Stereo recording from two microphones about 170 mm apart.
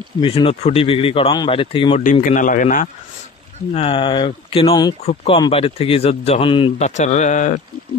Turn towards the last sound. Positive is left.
turn(degrees=45)  # may be behind; listen again after turning